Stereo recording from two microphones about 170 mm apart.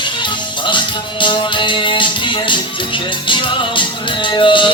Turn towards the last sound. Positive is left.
turn(degrees=30)  # may be behind; listen again after turning